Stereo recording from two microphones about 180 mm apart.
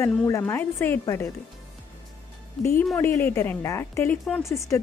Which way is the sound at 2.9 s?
15° left (ahead or behind).